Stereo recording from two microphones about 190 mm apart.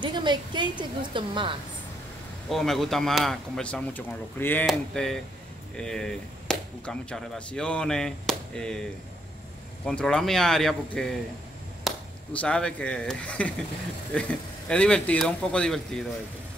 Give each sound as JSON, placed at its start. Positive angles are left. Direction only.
{"t": 0.0, "sound": "a woman's voice", "side_deg": -25}
{"t": 2.5, "sound": "speech", "side_deg": 0}
{"t": 9.8, "sound": "speech", "side_deg": 5}